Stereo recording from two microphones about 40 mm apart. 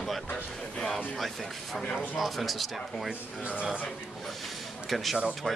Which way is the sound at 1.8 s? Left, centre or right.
Left.